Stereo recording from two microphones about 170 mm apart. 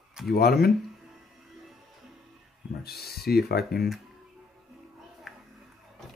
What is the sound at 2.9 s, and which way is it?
Speech, 65° left (ahead or behind).